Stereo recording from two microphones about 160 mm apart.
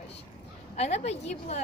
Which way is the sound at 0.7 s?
40° left (ahead or behind).